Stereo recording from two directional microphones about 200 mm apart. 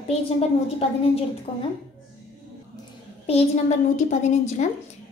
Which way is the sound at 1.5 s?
25° left (ahead or behind).